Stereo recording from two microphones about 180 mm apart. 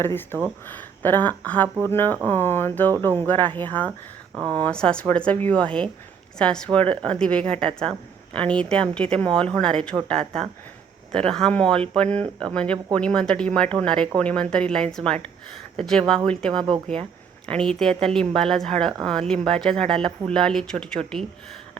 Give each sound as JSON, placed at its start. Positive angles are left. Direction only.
{"t": 0.0, "sound": "speech", "side_deg": 10}
{"t": 16.6, "sound": "speech", "side_deg": -30}
{"t": 17.5, "sound": "speech", "side_deg": 5}